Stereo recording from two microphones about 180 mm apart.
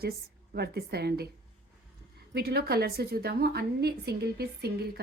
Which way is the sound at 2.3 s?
60° right (ahead or behind).